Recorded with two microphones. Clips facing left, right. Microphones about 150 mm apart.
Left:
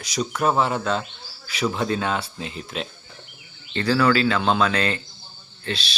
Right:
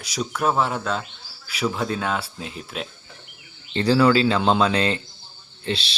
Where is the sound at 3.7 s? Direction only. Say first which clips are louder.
Right 2 dB; 25° right (ahead or behind).